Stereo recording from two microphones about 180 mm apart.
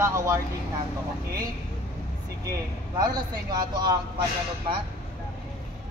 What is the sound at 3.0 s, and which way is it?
Speech, 25° right (ahead or behind).